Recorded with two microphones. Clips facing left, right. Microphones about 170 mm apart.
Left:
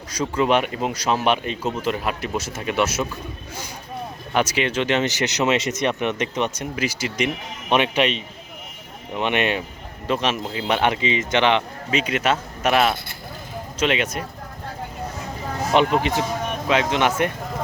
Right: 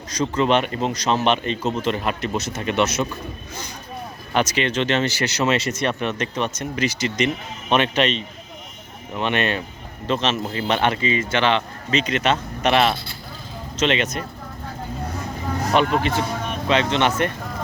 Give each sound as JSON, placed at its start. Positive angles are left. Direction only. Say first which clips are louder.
{"t": 0.1, "sound": "speech", "louder": "right 1 dB", "side_deg": 10}
{"t": 4.4, "sound": "speech", "louder": "even", "side_deg": 10}
{"t": 15.7, "sound": "speech", "louder": "left 1 dB", "side_deg": 15}